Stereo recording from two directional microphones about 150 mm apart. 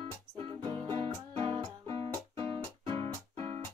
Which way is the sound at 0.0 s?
30° right (ahead or behind).